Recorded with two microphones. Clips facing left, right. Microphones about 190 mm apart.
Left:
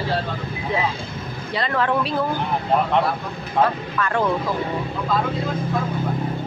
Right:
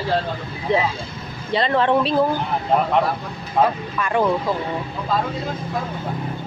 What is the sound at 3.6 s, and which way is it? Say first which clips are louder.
Speech: right 1 dB; 15° right (ahead or behind).